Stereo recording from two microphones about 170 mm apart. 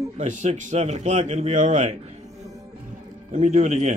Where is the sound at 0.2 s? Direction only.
45° right (ahead or behind).